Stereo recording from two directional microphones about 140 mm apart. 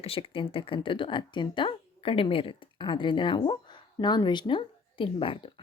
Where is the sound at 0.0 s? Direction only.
40° left (ahead or behind).